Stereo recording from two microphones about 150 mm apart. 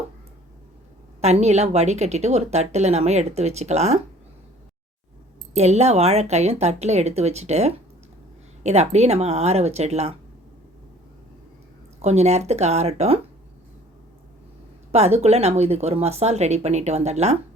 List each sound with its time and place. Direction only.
1.2 s speech: 45° right (ahead or behind)
5.5 s speech: 45° right (ahead or behind)
12.0 s speech: 45° right (ahead or behind)
14.9 s speech: 45° right (ahead or behind)